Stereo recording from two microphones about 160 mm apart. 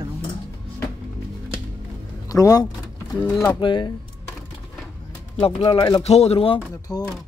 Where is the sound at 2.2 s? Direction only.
20° left (ahead or behind).